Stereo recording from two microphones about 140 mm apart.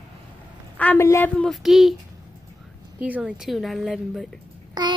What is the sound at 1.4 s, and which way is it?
Speech, centre (ahead or behind).